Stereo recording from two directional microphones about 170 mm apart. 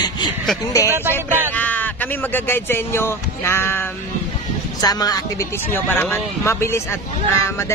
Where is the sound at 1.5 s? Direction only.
10° left (ahead or behind).